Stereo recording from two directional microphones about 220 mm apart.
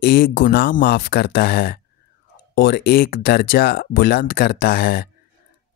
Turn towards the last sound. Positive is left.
turn(degrees=45)  # may be behind; listen again after turning